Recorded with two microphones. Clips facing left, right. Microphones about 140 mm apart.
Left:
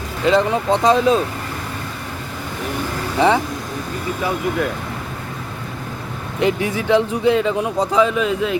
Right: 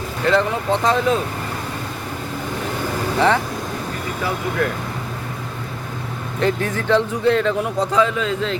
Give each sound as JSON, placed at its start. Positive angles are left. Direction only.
{"t": 0.3, "sound": "speech", "side_deg": 15}
{"t": 3.2, "sound": "speech", "side_deg": 15}
{"t": 6.4, "sound": "speech", "side_deg": 10}